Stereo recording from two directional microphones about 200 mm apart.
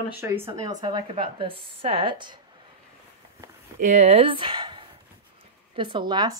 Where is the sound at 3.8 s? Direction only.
35° right (ahead or behind).